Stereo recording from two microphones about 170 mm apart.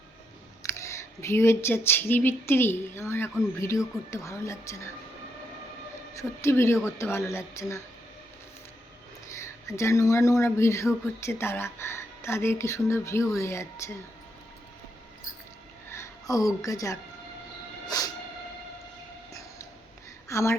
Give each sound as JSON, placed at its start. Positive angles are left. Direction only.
{"t": 0.6, "sound": "speech", "side_deg": 15}
{"t": 6.1, "sound": "speech", "side_deg": 15}
{"t": 9.4, "sound": "speech", "side_deg": 15}
{"t": 15.9, "sound": "speech", "side_deg": 20}
{"t": 17.8, "sound": "cat", "side_deg": 20}
{"t": 20.2, "sound": "speech", "side_deg": 15}